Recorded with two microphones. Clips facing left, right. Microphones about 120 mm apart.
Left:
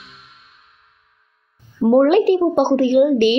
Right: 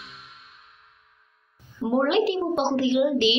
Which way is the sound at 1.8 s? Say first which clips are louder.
Left 9 dB; 50° left (ahead or behind).